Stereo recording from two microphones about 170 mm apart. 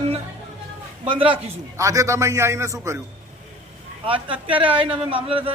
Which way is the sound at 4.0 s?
30° right (ahead or behind).